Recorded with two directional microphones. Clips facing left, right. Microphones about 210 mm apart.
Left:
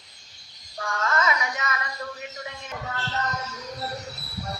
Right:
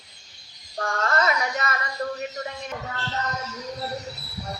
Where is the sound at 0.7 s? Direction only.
45° right (ahead or behind).